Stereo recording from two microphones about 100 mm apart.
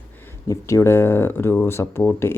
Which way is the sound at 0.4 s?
30° left (ahead or behind).